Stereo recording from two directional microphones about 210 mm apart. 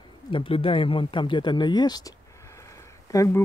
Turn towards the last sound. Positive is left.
turn(degrees=15)  # may be behind; listen again after turning